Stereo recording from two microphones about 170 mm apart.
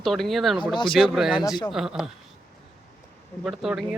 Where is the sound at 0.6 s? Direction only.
25° left (ahead or behind).